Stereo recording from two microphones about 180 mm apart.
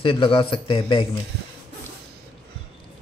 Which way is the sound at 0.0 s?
30° left (ahead or behind).